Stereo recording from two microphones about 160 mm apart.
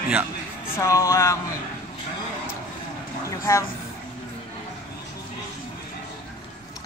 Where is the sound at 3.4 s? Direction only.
15° left (ahead or behind).